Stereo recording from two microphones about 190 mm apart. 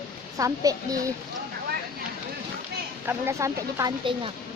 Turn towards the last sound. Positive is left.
turn(degrees=-15)  # may be behind; listen again after turning